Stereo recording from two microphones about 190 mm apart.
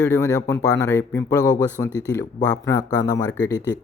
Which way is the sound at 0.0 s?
15° left (ahead or behind).